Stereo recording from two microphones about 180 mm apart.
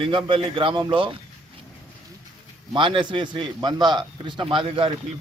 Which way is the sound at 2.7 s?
25° right (ahead or behind).